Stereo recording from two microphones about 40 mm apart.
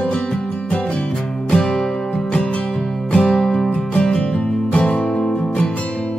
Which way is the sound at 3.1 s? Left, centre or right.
Left.